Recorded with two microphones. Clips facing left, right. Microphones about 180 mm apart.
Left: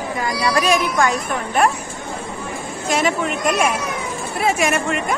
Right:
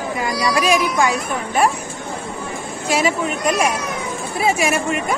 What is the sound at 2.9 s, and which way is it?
Speech, centre (ahead or behind).